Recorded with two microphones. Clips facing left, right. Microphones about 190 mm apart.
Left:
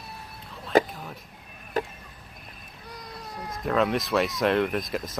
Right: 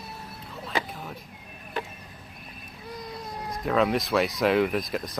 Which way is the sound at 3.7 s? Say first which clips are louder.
Right 1 dB; centre (ahead or behind).